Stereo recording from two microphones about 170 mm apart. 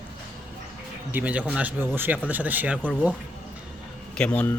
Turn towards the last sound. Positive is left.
turn(degrees=10)  # may be behind; listen again after turning